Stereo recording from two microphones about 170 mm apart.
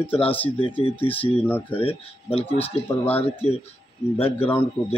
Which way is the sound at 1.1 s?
10° left (ahead or behind).